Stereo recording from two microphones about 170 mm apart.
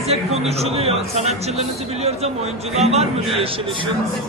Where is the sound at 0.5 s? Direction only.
35° right (ahead or behind).